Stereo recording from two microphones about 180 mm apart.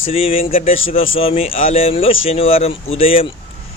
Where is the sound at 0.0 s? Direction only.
35° left (ahead or behind).